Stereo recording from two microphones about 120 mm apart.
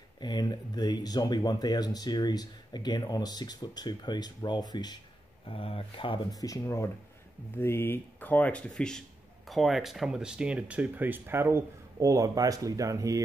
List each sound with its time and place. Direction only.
0.2 s speech: 35° left (ahead or behind)
5.5 s speech: 50° left (ahead or behind)
6.3 s speech: 30° left (ahead or behind); by 13.2 s 25° right (ahead or behind)